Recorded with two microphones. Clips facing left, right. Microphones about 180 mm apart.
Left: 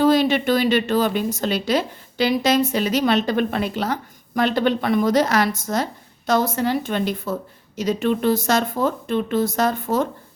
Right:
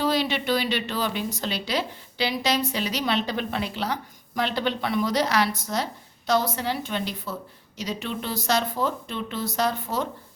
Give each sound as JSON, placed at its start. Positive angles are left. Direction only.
{"t": 0.0, "sound": "a woman's voice", "side_deg": 50}